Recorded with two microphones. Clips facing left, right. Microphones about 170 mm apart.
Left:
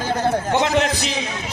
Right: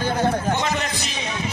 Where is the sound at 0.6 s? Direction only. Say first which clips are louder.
Left 6 dB; 80° left.